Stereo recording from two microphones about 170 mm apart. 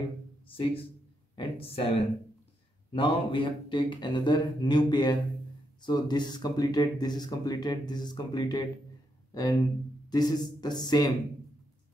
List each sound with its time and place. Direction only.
0.5 s a woman's voice: 35° left (ahead or behind)